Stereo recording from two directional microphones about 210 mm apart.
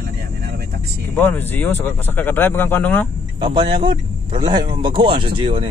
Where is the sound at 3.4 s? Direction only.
20° right (ahead or behind).